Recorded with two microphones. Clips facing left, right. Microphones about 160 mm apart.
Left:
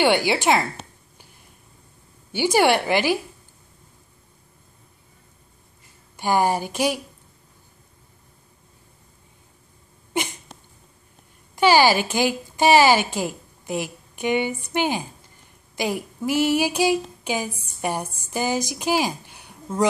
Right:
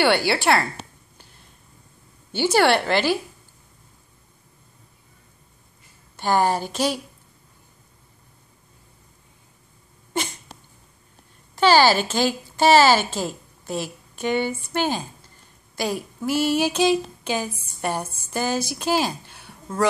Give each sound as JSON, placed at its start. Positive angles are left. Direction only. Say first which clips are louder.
{"t": 0.0, "sound": "a woman's voice", "louder": "left 1 dB", "side_deg": 15}
{"t": 2.3, "sound": "a woman's voice", "louder": "even", "side_deg": 15}
{"t": 6.1, "sound": "a woman's voice", "louder": "even", "side_deg": 10}
{"t": 11.5, "sound": "a woman's voice", "louder": "even", "side_deg": 15}